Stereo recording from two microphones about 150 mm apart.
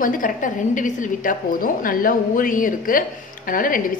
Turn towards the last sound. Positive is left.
turn(degrees=65)  # may be behind; listen again after turning